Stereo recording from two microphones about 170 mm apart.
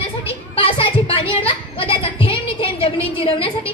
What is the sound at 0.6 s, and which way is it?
A woman's voice, 35° left (ahead or behind).